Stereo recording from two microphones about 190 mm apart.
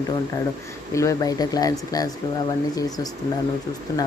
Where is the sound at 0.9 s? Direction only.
15° left (ahead or behind).